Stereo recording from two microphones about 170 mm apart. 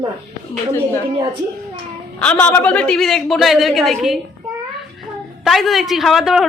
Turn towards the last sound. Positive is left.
turn(degrees=0)  # may be behind; listen again after turning